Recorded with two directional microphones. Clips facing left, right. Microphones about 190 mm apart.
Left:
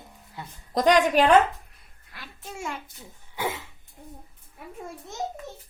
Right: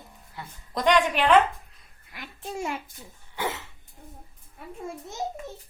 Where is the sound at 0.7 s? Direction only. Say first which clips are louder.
Left 3 dB; 40° left (ahead or behind).